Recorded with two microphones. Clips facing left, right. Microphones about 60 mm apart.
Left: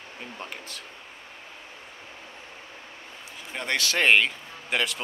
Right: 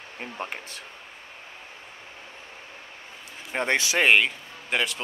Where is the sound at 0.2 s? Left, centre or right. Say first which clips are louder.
Right 5 dB; right.